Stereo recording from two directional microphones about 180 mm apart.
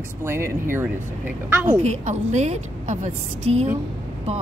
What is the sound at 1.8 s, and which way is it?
A woman's voice, 40° right (ahead or behind).